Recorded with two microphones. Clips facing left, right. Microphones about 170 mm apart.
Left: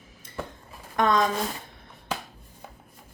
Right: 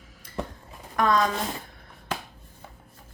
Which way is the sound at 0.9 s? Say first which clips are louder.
Even; 20° left (ahead or behind).